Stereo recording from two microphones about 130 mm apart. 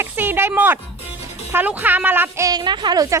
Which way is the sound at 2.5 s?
35° right (ahead or behind).